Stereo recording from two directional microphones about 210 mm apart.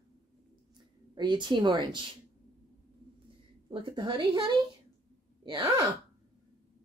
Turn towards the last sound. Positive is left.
turn(degrees=-20)  # may be behind; listen again after turning